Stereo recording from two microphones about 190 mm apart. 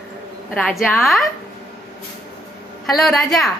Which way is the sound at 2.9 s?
Centre (ahead or behind).